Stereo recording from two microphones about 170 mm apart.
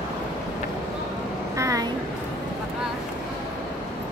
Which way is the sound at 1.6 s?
20° right (ahead or behind).